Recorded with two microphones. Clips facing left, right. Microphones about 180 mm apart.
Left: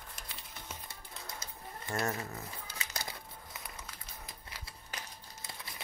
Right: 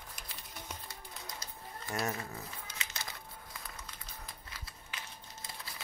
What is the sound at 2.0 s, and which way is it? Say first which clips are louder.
Crumpling: left 1 dB; 25° left (ahead or behind).